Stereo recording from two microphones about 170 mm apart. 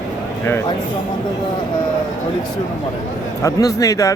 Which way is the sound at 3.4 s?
15° left (ahead or behind).